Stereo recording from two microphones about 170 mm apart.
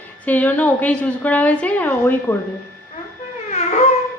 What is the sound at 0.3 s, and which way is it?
A woman's voice, 10° left (ahead or behind).